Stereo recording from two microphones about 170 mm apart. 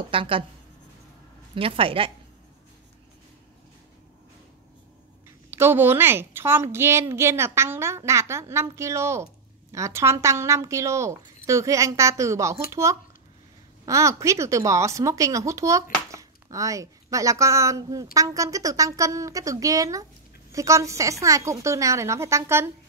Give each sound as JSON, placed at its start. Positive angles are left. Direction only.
{"t": 0.1, "sound": "speech", "side_deg": -30}
{"t": 1.5, "sound": "speech", "side_deg": -30}
{"t": 5.5, "sound": "a woman's voice", "side_deg": -15}
{"t": 13.8, "sound": "a woman's voice", "side_deg": -20}